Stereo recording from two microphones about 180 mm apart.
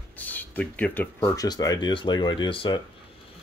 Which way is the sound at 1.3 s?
20° left (ahead or behind).